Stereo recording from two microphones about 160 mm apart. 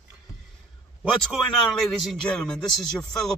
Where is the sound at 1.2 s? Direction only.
5° left (ahead or behind).